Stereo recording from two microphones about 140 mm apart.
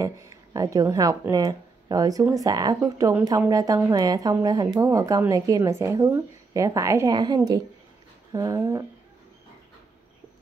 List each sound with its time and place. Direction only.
0.0 s a woman's voice: 25° right (ahead or behind)